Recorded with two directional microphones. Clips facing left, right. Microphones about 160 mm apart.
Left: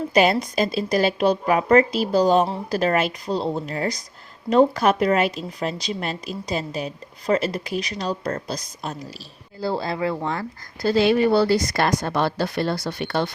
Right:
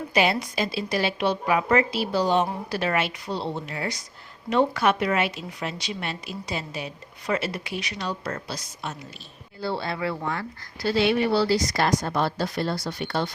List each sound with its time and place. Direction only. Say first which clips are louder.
0.1 s speech: left 4 dB; 45° left (ahead or behind); by 13.3 s 65° left (ahead or behind)